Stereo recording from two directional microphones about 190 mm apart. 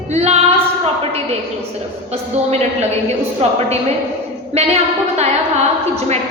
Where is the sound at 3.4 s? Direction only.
35° right (ahead or behind).